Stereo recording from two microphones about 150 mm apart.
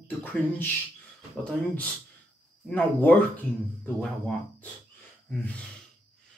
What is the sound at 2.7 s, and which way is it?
Speech, 10° left (ahead or behind).